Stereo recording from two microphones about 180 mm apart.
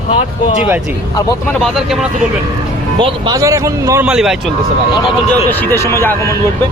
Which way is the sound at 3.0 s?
25° right (ahead or behind).